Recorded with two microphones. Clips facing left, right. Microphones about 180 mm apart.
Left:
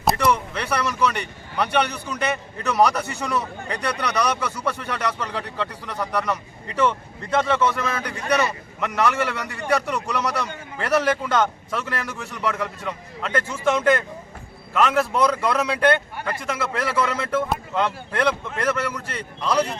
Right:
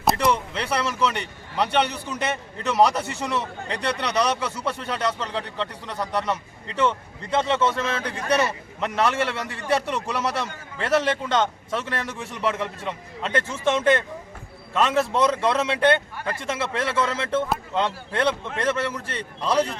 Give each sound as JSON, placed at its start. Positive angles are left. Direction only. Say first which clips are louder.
{"t": 0.2, "sound": "a man's voice", "louder": "left 1 dB", "side_deg": -30}
{"t": 7.4, "sound": "a man's voice", "louder": "left 1 dB", "side_deg": -25}